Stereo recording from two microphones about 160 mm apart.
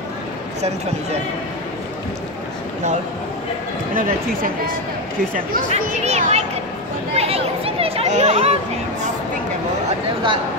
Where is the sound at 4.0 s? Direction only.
65° right (ahead or behind).